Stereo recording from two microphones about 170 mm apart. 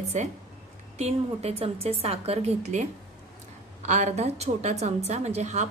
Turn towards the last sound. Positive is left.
turn(degrees=-40)  # may be behind; listen again after turning